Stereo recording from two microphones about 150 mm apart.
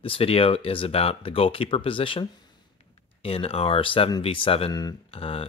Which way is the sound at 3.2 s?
40° left (ahead or behind).